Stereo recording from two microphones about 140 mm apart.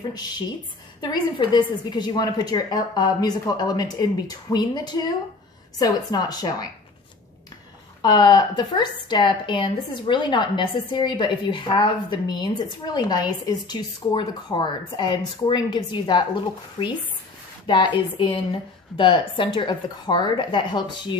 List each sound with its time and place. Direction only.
1.0 s a woman's voice: 30° left (ahead or behind)
8.0 s a woman's voice: 30° left (ahead or behind)